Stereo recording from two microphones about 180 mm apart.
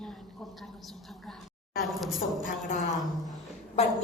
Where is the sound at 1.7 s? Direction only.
Centre (ahead or behind).